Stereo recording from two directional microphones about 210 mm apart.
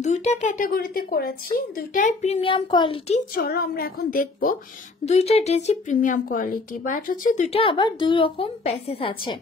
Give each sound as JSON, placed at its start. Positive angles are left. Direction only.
{"t": 0.0, "sound": "speech", "side_deg": 35}
{"t": 3.3, "sound": "a woman's voice", "side_deg": 45}
{"t": 5.0, "sound": "speech", "side_deg": 30}